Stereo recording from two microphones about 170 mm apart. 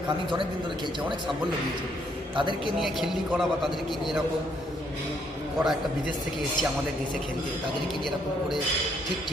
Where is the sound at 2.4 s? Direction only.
30° right (ahead or behind).